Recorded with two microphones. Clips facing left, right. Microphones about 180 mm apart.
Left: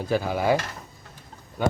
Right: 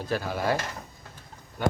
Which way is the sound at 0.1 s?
10° left (ahead or behind).